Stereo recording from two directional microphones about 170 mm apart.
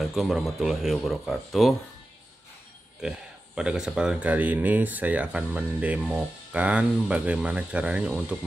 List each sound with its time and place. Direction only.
0.0 s speech: centre (ahead or behind)
3.0 s speech: 5° right (ahead or behind)